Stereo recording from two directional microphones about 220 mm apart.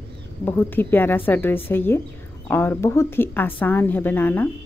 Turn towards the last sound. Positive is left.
turn(degrees=10)  # may be behind; listen again after turning